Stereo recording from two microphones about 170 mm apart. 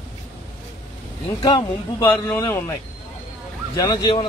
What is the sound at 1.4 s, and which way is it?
A man's voice, 25° left (ahead or behind).